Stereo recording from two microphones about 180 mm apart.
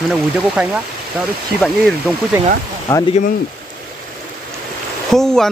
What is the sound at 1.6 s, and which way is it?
Speech, centre (ahead or behind).